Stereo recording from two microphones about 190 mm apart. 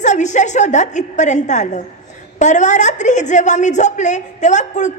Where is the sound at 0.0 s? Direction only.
40° left (ahead or behind).